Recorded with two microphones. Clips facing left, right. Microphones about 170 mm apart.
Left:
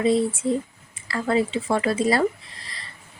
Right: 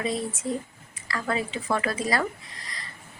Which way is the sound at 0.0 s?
30° left (ahead or behind).